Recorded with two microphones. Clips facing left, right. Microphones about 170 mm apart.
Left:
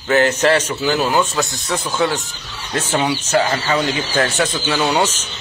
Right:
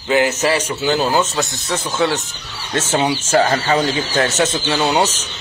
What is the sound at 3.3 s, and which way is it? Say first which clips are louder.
Speech: right 3 dB; 35° right (ahead or behind).